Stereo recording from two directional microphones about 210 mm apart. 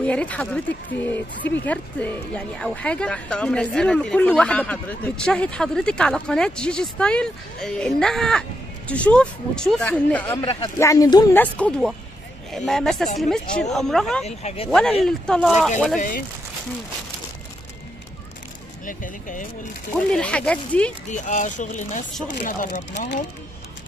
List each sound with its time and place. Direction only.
0.0 s speech: 5° left (ahead or behind)
10.4 s speech: 25° left (ahead or behind)
11.5 s speech: 5° left (ahead or behind)
14.2 s speech: 30° left (ahead or behind)
14.7 s speech: 5° left (ahead or behind)
16.0 s speech: 40° left (ahead or behind)
18.9 s speech: 40° left (ahead or behind)
20.1 s speech: 5° left (ahead or behind)
21.1 s speech: 35° left (ahead or behind)